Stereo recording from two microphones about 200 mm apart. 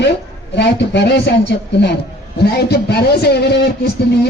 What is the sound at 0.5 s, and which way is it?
A man's voice, 60° left (ahead or behind).